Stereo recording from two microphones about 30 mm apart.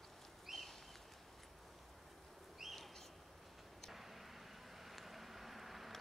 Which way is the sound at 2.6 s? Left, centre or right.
Centre.